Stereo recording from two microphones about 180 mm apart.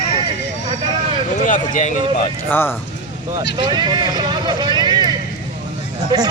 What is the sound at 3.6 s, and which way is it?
Speech, 25° right (ahead or behind).